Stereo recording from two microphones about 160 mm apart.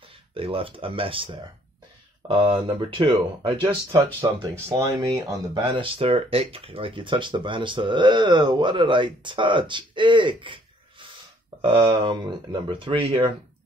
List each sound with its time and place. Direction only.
0.3 s speech: 35° right (ahead or behind)
5.6 s speech: 35° right (ahead or behind)